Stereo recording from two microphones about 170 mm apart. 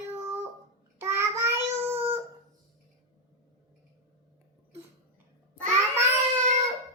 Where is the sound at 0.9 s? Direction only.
15° right (ahead or behind).